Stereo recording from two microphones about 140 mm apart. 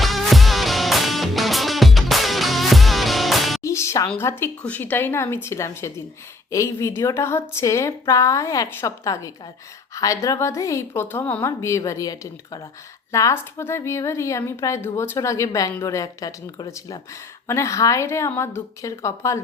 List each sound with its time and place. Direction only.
0.0 s music: centre (ahead or behind)
3.6 s music: 20° left (ahead or behind)
4.2 s a woman's voice: 20° left (ahead or behind)